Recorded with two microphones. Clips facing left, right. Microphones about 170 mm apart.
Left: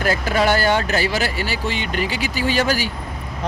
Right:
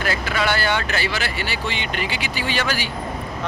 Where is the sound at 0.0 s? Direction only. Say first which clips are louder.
Left 4 dB; 40° left (ahead or behind).